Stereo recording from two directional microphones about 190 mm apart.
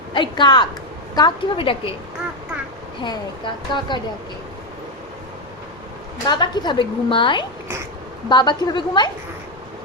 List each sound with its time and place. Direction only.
0.1 s a woman's voice: 25° left (ahead or behind)
3.0 s a woman's voice: 25° left (ahead or behind)
6.2 s a woman's voice: 25° left (ahead or behind)